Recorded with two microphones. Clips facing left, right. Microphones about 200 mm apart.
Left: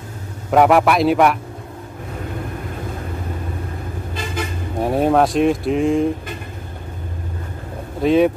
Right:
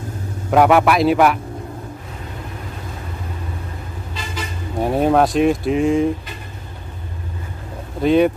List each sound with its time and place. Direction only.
0.5 s speech: centre (ahead or behind)
4.4 s vehicle: 55° left (ahead or behind)
4.7 s speech: centre (ahead or behind)
8.0 s speech: centre (ahead or behind)